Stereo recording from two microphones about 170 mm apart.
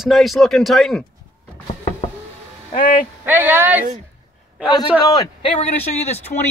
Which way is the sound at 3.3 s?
10° right (ahead or behind).